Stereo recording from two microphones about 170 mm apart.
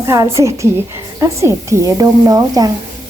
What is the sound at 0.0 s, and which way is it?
A woman's voice, 15° right (ahead or behind).